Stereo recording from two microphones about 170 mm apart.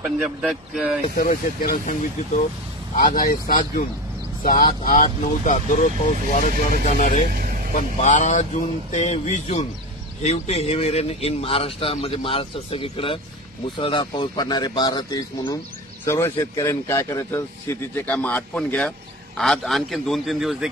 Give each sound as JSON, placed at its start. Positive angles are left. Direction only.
{"t": 0.2, "sound": "speech", "side_deg": -5}
{"t": 1.1, "sound": "speech", "side_deg": 55}
{"t": 7.2, "sound": "vehicle", "side_deg": -55}
{"t": 7.7, "sound": "a man's voice", "side_deg": 45}